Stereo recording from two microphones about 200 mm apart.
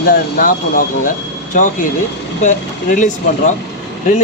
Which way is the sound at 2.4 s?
40° left (ahead or behind).